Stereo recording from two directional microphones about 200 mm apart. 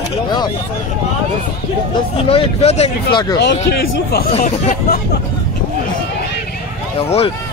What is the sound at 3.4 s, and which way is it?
Speech, 55° left (ahead or behind).